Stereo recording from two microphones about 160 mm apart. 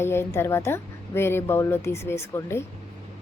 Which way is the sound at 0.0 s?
15° left (ahead or behind).